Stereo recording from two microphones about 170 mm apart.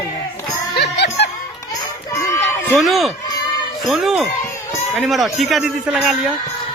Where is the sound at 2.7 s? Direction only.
Centre (ahead or behind).